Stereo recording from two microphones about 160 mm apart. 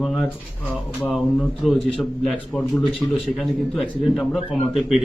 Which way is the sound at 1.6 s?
Centre (ahead or behind).